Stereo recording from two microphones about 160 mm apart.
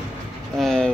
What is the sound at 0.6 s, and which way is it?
Vehicle, 5° left (ahead or behind).